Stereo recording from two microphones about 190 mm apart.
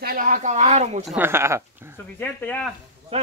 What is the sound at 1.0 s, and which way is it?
Speech, 10° right (ahead or behind).